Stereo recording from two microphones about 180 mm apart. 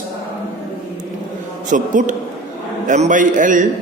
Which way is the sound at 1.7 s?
45° right (ahead or behind).